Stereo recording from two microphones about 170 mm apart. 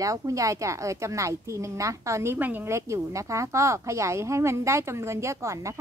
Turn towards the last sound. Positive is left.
turn(degrees=-20)  # may be behind; listen again after turning